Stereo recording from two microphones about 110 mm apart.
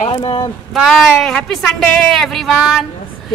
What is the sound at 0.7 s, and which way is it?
Speech, centre (ahead or behind).